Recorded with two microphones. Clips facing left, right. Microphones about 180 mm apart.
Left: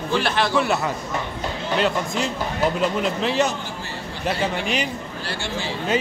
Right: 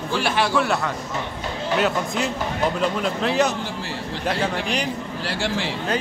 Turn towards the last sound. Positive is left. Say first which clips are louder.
# right 3 dB
turn(degrees=-90)